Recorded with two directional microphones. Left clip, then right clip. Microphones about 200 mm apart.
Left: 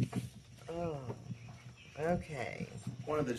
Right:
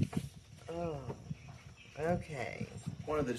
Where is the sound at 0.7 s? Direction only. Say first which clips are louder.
Even; 5° right (ahead or behind).